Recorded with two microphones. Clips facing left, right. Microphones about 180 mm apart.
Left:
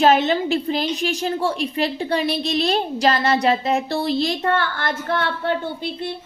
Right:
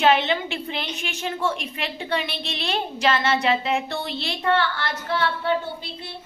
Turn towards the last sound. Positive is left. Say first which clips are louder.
# left 6 dB
turn(degrees=55)  # may be behind; listen again after turning